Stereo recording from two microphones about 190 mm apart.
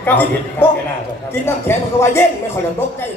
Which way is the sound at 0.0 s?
10° left (ahead or behind).